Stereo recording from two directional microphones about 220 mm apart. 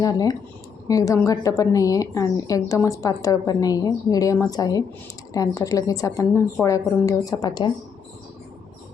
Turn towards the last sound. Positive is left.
turn(degrees=20)  # may be behind; listen again after turning